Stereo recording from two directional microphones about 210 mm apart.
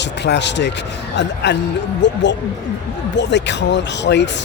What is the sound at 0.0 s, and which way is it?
Speech, 55° left (ahead or behind).